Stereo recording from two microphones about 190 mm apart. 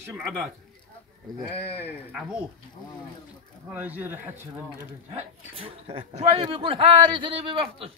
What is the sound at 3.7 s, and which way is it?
Speech, 10° right (ahead or behind).